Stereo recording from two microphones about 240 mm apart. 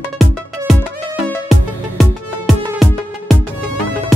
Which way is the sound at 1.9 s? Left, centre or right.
Centre.